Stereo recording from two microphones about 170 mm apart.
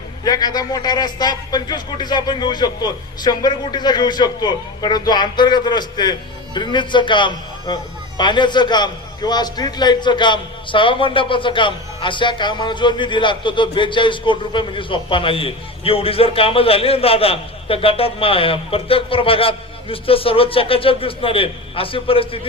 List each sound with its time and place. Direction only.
0.3 s a man's voice: 25° left (ahead or behind)